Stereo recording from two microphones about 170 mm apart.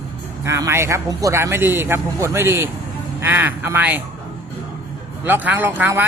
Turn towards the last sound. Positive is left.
turn(degrees=-10)  # may be behind; listen again after turning